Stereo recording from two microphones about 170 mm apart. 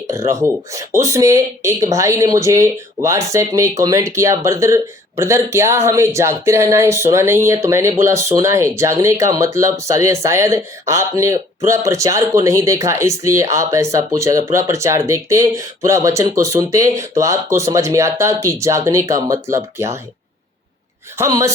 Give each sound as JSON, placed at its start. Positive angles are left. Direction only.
{"t": 0.1, "sound": "speech", "side_deg": -20}
{"t": 21.2, "sound": "speech", "side_deg": -20}